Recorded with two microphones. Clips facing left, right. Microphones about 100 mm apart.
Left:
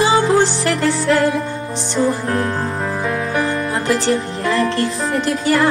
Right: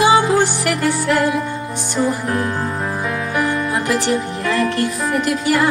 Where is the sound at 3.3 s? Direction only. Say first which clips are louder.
Even; 30° left (ahead or behind).